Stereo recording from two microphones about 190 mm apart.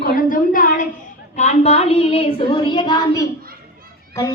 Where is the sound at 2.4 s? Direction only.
25° left (ahead or behind).